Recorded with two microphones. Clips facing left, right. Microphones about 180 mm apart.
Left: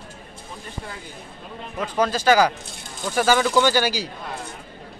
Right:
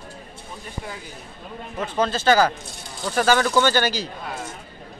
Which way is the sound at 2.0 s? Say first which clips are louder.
Left 1 dB; 10° left (ahead or behind).